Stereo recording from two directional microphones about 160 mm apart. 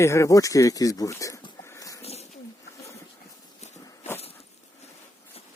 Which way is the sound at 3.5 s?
45° left (ahead or behind).